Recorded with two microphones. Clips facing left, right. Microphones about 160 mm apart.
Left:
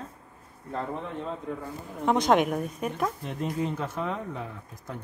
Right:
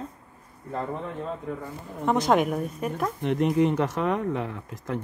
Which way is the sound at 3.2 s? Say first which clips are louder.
Right 8 dB; 70° right (ahead or behind).